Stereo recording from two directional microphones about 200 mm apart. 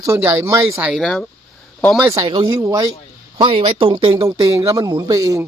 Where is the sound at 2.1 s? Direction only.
20° right (ahead or behind).